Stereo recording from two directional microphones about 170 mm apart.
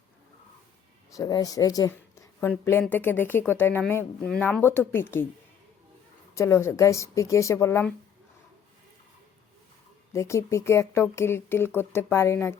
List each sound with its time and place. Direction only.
1.1 s speech: 20° left (ahead or behind)
6.3 s speech: 15° left (ahead or behind)
10.1 s speech: 15° left (ahead or behind)